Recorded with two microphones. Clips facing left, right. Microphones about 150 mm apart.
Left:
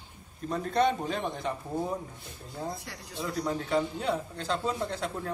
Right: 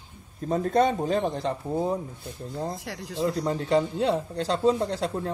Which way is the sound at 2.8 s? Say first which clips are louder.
Right 8 dB; 90° right.